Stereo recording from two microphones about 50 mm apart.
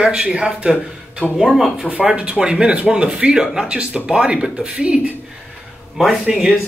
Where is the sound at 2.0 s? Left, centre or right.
Centre.